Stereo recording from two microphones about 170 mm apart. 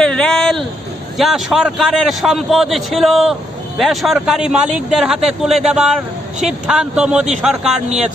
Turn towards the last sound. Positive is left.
turn(degrees=-5)  # may be behind; listen again after turning